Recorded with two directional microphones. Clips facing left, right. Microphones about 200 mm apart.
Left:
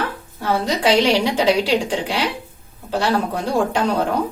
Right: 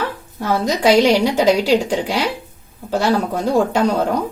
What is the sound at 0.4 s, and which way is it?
A woman's voice, 40° right (ahead or behind).